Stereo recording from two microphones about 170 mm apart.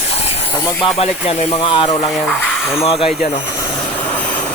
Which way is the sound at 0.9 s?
35° left (ahead or behind).